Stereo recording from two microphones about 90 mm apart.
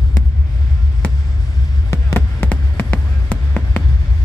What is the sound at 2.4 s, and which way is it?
Music, 20° left (ahead or behind).